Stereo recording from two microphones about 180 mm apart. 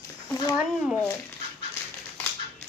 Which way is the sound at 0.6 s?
5° right (ahead or behind).